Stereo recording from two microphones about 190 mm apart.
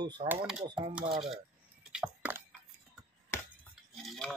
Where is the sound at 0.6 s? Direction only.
25° right (ahead or behind).